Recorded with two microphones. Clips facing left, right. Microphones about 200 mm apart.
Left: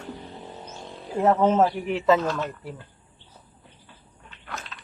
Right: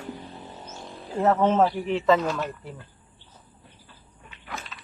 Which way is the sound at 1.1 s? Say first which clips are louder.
Left 1 dB; 10° left (ahead or behind).